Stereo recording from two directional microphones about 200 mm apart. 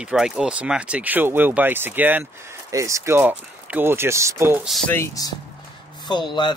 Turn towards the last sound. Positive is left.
turn(degrees=20)  # may be behind; listen again after turning